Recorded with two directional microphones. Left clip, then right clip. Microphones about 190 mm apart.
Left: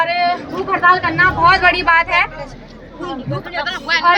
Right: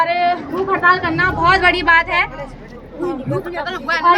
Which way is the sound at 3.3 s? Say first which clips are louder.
Even; 60° right (ahead or behind).